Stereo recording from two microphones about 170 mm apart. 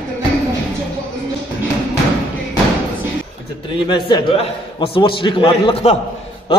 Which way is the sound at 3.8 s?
25° left (ahead or behind).